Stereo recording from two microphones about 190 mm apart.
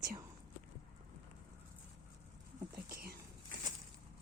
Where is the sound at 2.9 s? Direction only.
50° right (ahead or behind).